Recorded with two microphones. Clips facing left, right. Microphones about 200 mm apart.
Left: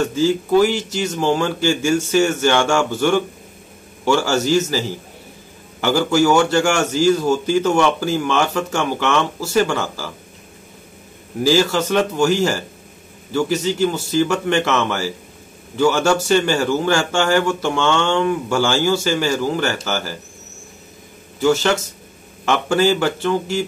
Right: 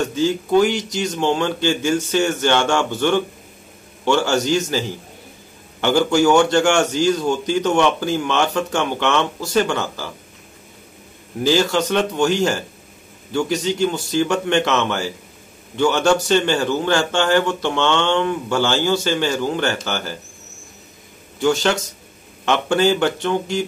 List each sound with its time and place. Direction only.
0.1 s a man's voice: 5° left (ahead or behind)
11.4 s speech: 5° left (ahead or behind)
13.3 s a man's voice: 5° left (ahead or behind)
22.4 s speech: 5° left (ahead or behind)